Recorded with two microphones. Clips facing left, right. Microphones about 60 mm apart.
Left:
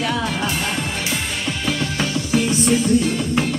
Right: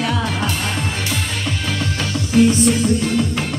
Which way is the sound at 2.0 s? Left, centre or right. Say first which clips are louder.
Right 8 dB; centre.